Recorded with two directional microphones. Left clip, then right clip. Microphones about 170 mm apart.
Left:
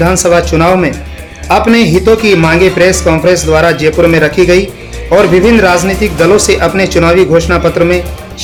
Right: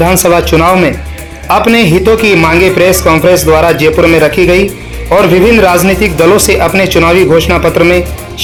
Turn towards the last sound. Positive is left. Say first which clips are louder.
# right 2 dB
turn(degrees=-15)  # may be behind; listen again after turning